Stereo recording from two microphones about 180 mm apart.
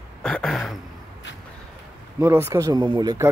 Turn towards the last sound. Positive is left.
turn(degrees=-20)  # may be behind; listen again after turning